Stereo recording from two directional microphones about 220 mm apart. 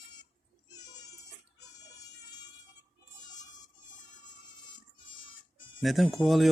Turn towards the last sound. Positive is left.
turn(degrees=0)  # may be behind; listen again after turning